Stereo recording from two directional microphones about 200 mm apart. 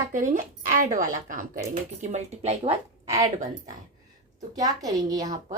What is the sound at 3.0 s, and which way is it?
Speech, 15° right (ahead or behind).